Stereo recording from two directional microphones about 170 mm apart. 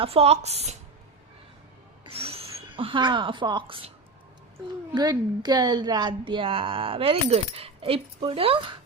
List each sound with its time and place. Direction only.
0.0 s a woman's voice: 35° right (ahead or behind)
2.0 s a woman's voice: 35° right (ahead or behind)